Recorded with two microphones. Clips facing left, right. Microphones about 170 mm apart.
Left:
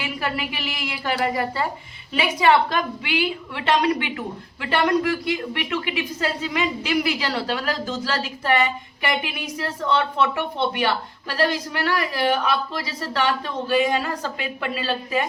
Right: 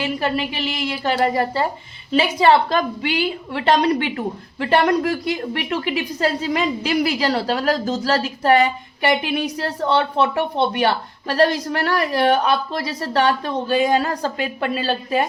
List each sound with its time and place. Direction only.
0.0 s a woman's voice: 30° right (ahead or behind)